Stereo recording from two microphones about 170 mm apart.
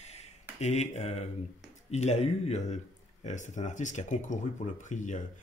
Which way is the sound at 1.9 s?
40° left (ahead or behind).